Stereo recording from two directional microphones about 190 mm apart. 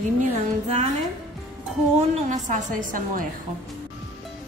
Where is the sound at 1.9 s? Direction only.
40° right (ahead or behind).